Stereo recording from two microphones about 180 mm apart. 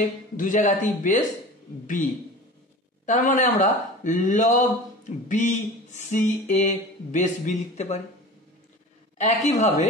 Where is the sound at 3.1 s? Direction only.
45° left (ahead or behind).